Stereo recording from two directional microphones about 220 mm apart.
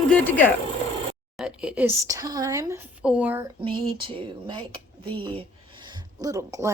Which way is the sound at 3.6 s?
25° right (ahead or behind).